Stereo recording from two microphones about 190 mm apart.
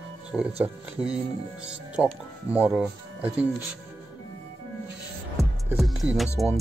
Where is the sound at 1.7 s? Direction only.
5° right (ahead or behind).